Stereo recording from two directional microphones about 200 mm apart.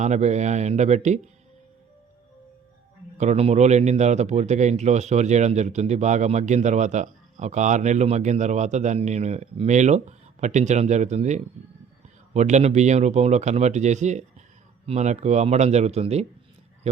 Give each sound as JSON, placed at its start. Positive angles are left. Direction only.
{"t": 0.0, "sound": "speech", "side_deg": -35}
{"t": 3.2, "sound": "speech", "side_deg": -30}